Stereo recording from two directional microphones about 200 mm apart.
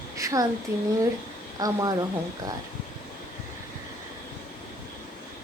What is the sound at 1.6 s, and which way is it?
Speech, 20° right (ahead or behind).